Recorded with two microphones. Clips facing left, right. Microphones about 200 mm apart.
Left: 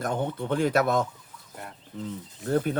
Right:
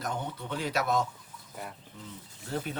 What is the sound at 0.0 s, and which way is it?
Speech, 50° left (ahead or behind).